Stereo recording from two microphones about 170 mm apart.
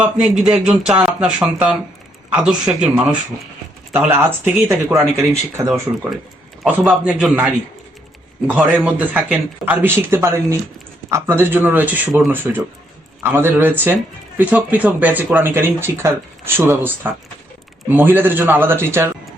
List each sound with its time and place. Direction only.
0.0 s speech: 5° right (ahead or behind)
6.6 s speech: 5° right (ahead or behind)